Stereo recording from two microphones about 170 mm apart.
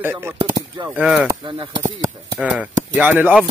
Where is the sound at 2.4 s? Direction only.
5° right (ahead or behind).